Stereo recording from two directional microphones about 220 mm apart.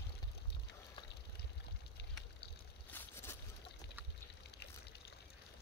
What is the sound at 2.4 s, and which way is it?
Boat, 45° left (ahead or behind).